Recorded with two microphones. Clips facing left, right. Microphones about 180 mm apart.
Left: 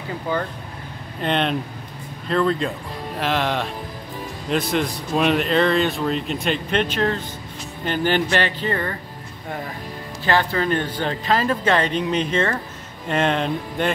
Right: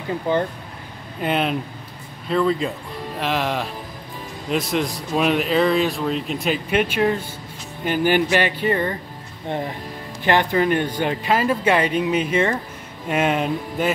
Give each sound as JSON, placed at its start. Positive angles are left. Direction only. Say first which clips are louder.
{"t": 0.3, "sound": "speech", "louder": "right 4 dB", "side_deg": -20}
{"t": 1.2, "sound": "a man's voice", "louder": "even", "side_deg": -5}
{"t": 10.2, "sound": "speech", "louder": "right 2 dB", "side_deg": -15}